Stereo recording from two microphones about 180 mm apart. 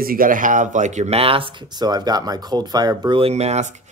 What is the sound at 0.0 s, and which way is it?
Speech, 50° right (ahead or behind).